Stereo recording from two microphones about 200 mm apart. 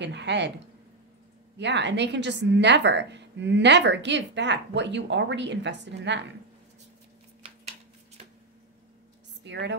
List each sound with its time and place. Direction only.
0.0 s a woman's voice: 60° right (ahead or behind)
1.6 s a woman's voice: 60° right (ahead or behind)
9.4 s a woman's voice: 60° right (ahead or behind)